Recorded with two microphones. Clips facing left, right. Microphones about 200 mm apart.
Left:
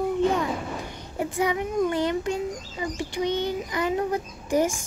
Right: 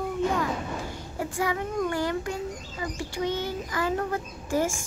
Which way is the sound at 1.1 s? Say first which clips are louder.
Left 4 dB; 20° left (ahead or behind).